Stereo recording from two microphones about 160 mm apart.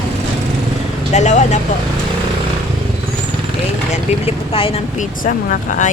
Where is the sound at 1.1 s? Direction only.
45° left (ahead or behind).